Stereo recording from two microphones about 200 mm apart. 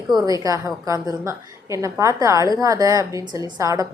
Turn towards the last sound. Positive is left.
turn(degrees=-15)  # may be behind; listen again after turning